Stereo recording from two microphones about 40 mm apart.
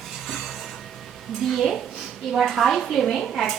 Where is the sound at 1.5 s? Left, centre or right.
Centre.